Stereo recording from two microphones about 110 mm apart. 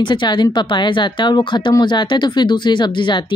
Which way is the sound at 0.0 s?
45° left (ahead or behind).